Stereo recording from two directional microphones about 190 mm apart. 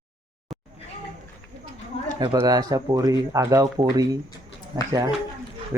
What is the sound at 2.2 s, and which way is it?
Speech, 20° right (ahead or behind).